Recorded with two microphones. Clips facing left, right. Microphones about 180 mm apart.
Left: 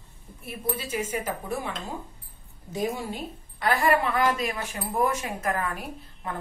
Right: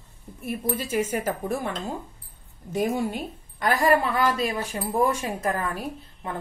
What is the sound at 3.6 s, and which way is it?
A woman's voice, 35° right (ahead or behind).